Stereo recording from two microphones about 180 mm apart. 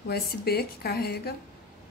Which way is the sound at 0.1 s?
60° left (ahead or behind).